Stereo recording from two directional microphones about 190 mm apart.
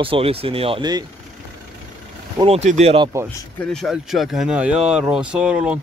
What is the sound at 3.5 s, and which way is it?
Speech, centre (ahead or behind).